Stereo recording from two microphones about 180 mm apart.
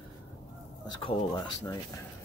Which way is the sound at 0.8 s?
25° left (ahead or behind).